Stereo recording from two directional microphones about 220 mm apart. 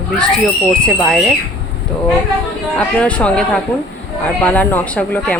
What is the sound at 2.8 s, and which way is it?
Speech, 5° left (ahead or behind).